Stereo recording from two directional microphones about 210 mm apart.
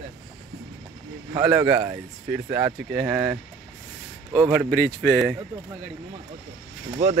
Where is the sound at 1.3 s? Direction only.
5° right (ahead or behind).